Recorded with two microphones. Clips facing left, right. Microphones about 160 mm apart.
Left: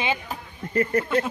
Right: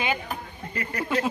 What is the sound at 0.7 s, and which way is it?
Speech, 45° left (ahead or behind).